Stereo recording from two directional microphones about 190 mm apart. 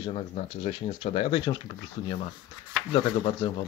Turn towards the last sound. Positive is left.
turn(degrees=25)  # may be behind; listen again after turning